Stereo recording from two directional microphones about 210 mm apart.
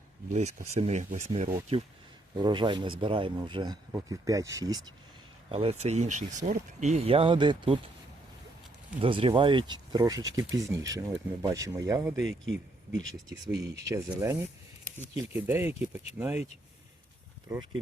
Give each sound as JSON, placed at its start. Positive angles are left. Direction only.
{"t": 0.7, "sound": "speech", "side_deg": -30}
{"t": 2.3, "sound": "speech", "side_deg": -20}
{"t": 5.5, "sound": "speech", "side_deg": -30}
{"t": 9.0, "sound": "speech", "side_deg": -25}
{"t": 12.2, "sound": "speech", "side_deg": -65}
{"t": 13.0, "sound": "speech", "side_deg": 0}
{"t": 13.8, "sound": "speech", "side_deg": -15}